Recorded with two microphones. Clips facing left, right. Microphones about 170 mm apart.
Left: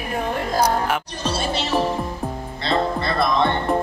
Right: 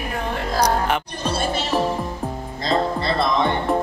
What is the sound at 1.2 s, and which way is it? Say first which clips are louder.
Music: right 1 dB; 55° right (ahead or behind).